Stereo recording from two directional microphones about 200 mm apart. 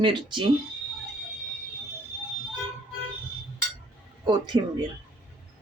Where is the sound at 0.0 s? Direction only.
25° right (ahead or behind).